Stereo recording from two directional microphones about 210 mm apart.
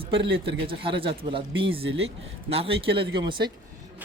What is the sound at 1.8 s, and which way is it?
Speech, 70° right (ahead or behind).